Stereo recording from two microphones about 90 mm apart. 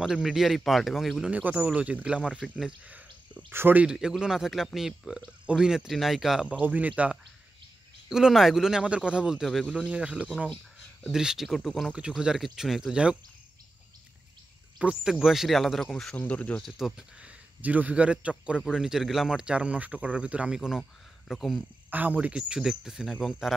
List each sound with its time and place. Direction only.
0.0 s speech: 5° right (ahead or behind)
1.2 s speech: 15° right (ahead or behind)
3.8 s speech: 10° right (ahead or behind)
6.6 s speech: 20° right (ahead or behind); by 11.9 s centre (ahead or behind)
11.9 s speech: 10° right (ahead or behind)
14.8 s speech: 10° right (ahead or behind)
16.2 s speech: 15° left (ahead or behind)
16.6 s speech: 5° right (ahead or behind)
21.9 s speech: 20° right (ahead or behind)